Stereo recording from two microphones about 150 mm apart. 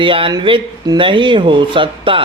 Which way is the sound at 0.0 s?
35° right (ahead or behind).